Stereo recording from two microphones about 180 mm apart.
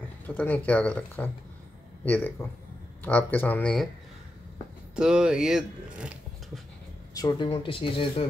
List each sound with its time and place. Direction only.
0.3 s speech: 10° left (ahead or behind)
4.9 s speech: 5° right (ahead or behind)
7.2 s speech: 25° left (ahead or behind)